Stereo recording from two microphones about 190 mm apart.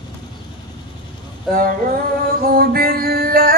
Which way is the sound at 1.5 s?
50° right (ahead or behind).